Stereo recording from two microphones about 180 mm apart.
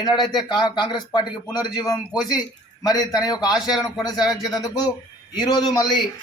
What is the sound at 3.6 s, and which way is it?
Speech, 5° right (ahead or behind).